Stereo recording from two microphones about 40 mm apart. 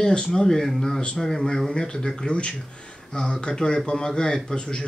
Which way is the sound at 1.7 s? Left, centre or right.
Left.